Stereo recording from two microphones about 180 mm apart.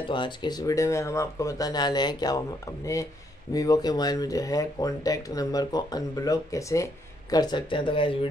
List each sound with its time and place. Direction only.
0.1 s speech: 25° left (ahead or behind)